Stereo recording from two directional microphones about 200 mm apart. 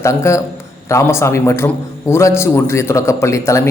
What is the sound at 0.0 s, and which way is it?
A man's voice, 15° left (ahead or behind).